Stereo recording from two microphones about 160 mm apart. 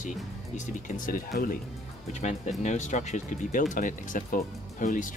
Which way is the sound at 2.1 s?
45° left (ahead or behind).